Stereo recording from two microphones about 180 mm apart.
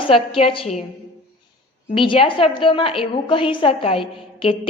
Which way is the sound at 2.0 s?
30° left (ahead or behind).